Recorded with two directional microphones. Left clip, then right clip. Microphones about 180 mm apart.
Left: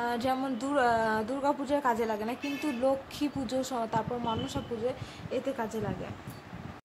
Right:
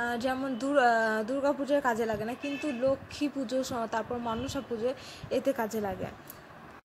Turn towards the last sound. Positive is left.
turn(degrees=-25)  # may be behind; listen again after turning